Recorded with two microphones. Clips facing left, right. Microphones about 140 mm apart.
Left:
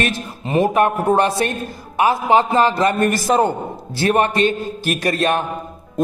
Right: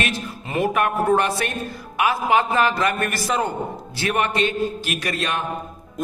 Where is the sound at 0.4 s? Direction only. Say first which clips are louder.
Left 6 dB; 25° left (ahead or behind).